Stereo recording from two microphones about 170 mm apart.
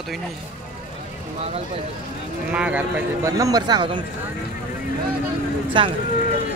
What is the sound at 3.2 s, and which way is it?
Speech, 20° right (ahead or behind).